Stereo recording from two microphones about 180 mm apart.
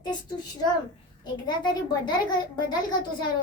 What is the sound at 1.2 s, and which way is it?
A child's voice, 25° left (ahead or behind).